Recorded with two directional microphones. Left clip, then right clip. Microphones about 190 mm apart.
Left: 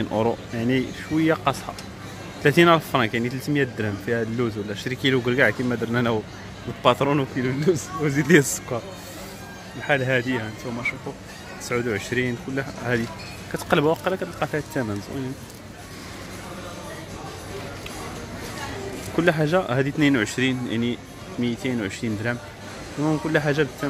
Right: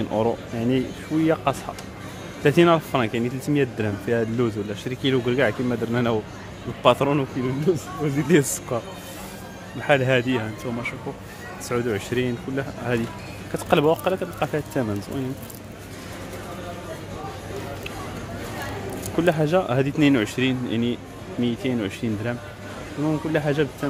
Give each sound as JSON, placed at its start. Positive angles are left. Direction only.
{"t": 0.1, "sound": "speech", "side_deg": 10}
{"t": 4.8, "sound": "speech", "side_deg": 5}
{"t": 7.4, "sound": "speech", "side_deg": 20}
{"t": 8.5, "sound": "speech", "side_deg": -5}
{"t": 19.1, "sound": "speech", "side_deg": 5}